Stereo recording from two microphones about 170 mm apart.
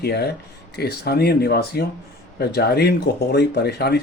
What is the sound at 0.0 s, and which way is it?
Speech, 70° left (ahead or behind).